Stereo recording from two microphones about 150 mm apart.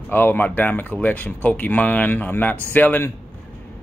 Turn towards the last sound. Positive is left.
turn(degrees=10)  # may be behind; listen again after turning